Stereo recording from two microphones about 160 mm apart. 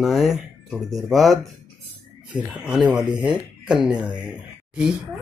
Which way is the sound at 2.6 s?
5° right (ahead or behind).